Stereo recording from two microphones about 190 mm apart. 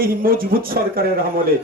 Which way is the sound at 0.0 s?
50° right (ahead or behind).